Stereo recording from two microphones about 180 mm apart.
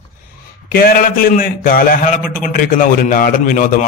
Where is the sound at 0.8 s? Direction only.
55° left (ahead or behind).